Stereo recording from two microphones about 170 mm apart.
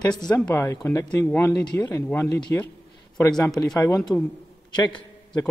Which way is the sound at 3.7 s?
20° left (ahead or behind).